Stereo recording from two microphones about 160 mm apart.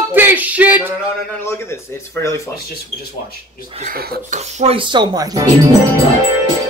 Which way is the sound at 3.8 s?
70° right (ahead or behind).